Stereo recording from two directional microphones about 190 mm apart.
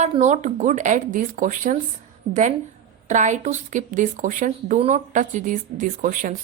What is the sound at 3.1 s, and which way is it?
Speech, 40° right (ahead or behind).